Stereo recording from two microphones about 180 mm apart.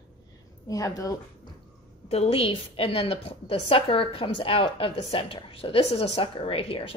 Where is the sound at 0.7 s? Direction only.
20° left (ahead or behind).